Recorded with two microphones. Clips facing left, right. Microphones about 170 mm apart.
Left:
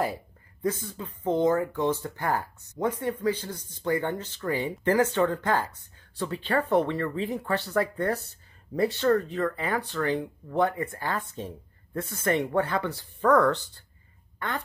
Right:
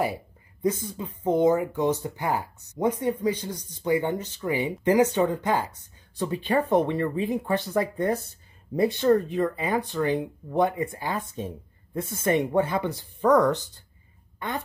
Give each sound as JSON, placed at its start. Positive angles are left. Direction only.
{"t": 0.0, "sound": "speech", "side_deg": -15}